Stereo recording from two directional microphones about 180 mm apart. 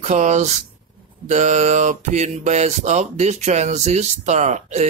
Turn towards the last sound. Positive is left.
turn(degrees=-40)  # may be behind; listen again after turning